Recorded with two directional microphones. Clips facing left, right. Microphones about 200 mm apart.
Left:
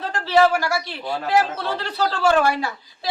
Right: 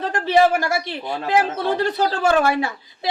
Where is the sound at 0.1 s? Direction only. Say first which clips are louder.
Right 1 dB; 20° right (ahead or behind).